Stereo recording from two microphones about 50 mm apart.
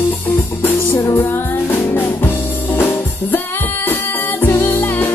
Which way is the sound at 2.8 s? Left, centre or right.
Left.